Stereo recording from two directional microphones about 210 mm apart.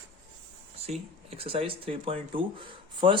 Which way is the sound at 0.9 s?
25° right (ahead or behind).